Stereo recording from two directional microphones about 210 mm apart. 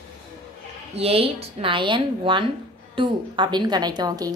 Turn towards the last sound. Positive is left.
turn(degrees=-20)  # may be behind; listen again after turning